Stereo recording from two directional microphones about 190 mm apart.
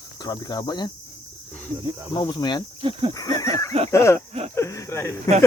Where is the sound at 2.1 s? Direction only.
25° left (ahead or behind).